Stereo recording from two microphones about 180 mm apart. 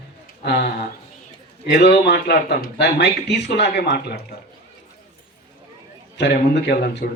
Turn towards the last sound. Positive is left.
turn(degrees=70)  # may be behind; listen again after turning